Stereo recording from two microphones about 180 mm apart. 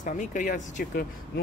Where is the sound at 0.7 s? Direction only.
60° left (ahead or behind).